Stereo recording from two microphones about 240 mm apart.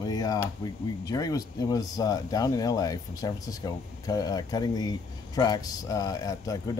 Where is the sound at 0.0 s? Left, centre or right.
Centre.